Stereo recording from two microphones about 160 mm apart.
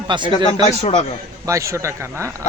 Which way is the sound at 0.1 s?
30° right (ahead or behind).